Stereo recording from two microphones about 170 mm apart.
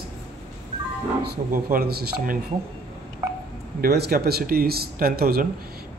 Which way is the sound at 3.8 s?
65° right (ahead or behind).